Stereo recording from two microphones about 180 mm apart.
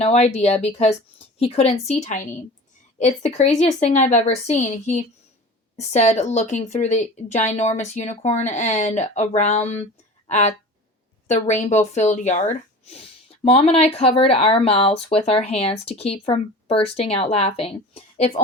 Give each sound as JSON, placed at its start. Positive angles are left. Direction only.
{"t": 0.0, "sound": "a woman's voice", "side_deg": 35}